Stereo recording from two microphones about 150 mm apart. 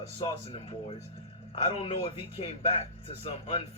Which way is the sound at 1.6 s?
40° left (ahead or behind).